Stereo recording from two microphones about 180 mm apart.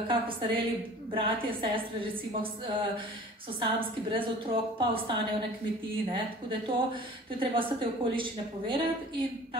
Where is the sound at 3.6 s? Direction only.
30° right (ahead or behind).